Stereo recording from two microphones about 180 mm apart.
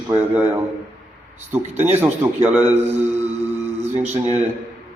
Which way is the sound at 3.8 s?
35° right (ahead or behind).